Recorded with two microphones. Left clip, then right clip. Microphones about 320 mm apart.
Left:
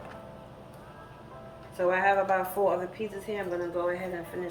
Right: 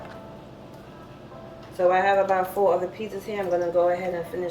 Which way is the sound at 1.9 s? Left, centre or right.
Centre.